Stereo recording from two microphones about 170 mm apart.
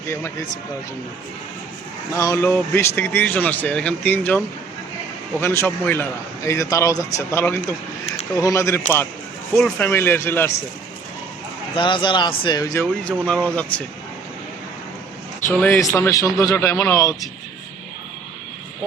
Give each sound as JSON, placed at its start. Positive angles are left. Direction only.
{"t": 0.1, "sound": "a man's voice", "side_deg": 15}
{"t": 2.1, "sound": "a man's voice", "side_deg": 20}
{"t": 11.7, "sound": "a man's voice", "side_deg": 30}
{"t": 15.4, "sound": "a man's voice", "side_deg": 15}